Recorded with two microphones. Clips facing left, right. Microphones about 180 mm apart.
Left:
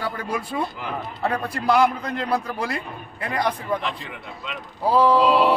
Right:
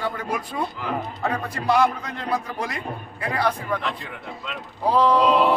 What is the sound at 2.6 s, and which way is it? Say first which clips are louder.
Speech: left 2 dB; 35° left (ahead or behind).